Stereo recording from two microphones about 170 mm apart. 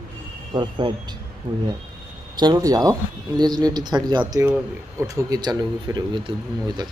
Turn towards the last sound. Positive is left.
turn(degrees=-25)  # may be behind; listen again after turning